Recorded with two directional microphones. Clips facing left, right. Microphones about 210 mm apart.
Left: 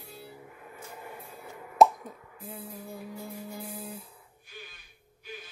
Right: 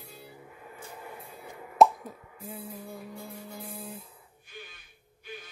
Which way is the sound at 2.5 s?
5° right (ahead or behind).